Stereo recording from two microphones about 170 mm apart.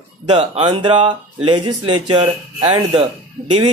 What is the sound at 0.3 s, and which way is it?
Speech, 30° right (ahead or behind).